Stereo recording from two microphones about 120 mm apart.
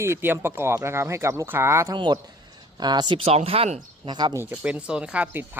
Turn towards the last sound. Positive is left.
turn(degrees=-15)  # may be behind; listen again after turning